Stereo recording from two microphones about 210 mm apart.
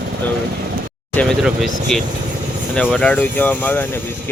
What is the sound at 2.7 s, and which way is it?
Speech, 5° left (ahead or behind).